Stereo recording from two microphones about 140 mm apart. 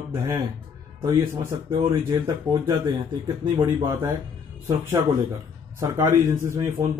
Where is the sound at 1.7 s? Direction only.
30° right (ahead or behind).